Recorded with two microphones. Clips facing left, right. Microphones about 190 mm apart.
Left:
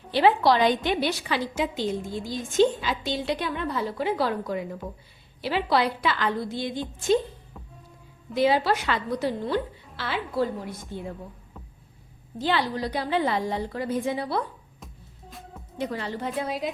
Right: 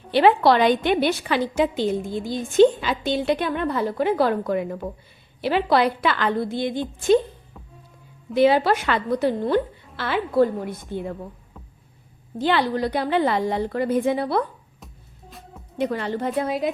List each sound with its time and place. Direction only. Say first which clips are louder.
0.1 s a woman's voice: right 4 dB; 60° right (ahead or behind)
8.4 s a woman's voice: right 5 dB; 60° right (ahead or behind)
12.4 s a woman's voice: right 5 dB; 60° right (ahead or behind)
15.3 s music: even; centre (ahead or behind)
15.8 s a woman's voice: right 6 dB; 60° right (ahead or behind)